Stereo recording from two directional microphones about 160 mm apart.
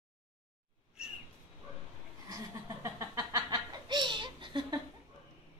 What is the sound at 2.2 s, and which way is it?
Laughter, 20° right (ahead or behind).